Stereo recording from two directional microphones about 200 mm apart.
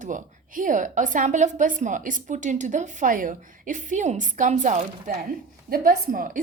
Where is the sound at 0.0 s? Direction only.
40° right (ahead or behind).